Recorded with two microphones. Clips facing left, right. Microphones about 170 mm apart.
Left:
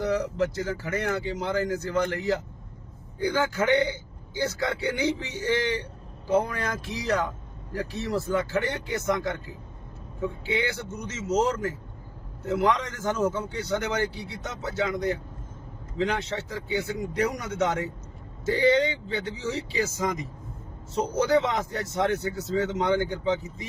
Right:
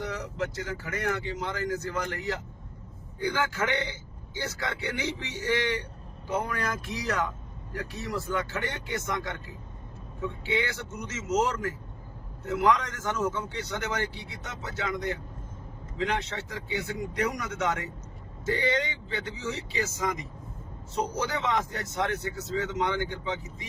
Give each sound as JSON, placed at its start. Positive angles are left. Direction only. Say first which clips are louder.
{"t": 0.0, "sound": "speech", "louder": "left 7 dB", "side_deg": 35}
{"t": 21.2, "sound": "speech", "louder": "left 8 dB", "side_deg": 35}